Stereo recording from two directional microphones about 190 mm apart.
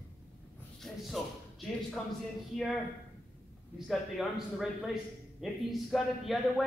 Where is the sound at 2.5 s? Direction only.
Centre (ahead or behind).